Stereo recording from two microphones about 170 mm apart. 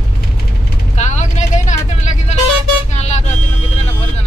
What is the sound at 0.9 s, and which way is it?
Vehicle, 45° left (ahead or behind).